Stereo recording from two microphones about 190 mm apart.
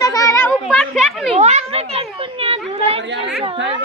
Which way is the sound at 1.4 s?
35° right (ahead or behind).